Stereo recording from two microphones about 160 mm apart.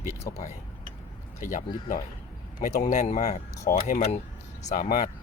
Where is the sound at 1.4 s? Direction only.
55° left (ahead or behind).